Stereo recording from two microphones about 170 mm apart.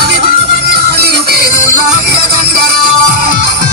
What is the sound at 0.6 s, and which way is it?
Music, 65° right (ahead or behind).